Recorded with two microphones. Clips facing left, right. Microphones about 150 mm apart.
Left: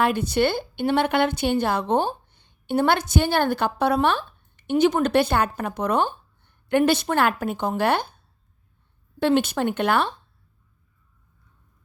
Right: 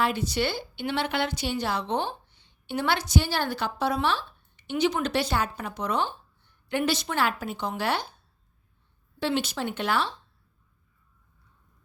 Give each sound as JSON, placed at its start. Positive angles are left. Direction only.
{"t": 0.0, "sound": "a woman's voice", "side_deg": 55}
{"t": 9.1, "sound": "speech", "side_deg": 55}